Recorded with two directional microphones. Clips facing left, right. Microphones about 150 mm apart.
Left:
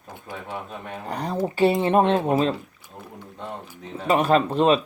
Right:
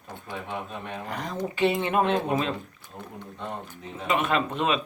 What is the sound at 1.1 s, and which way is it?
Speech, 35° left (ahead or behind).